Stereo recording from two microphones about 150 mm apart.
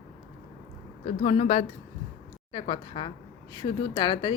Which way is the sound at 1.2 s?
45° left (ahead or behind).